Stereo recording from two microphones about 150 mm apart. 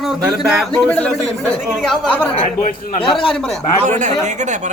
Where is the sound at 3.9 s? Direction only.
55° right (ahead or behind).